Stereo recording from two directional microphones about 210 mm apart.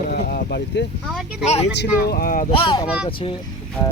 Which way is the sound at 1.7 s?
50° left (ahead or behind).